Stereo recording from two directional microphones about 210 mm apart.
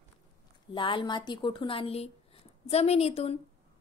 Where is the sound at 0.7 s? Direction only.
25° left (ahead or behind).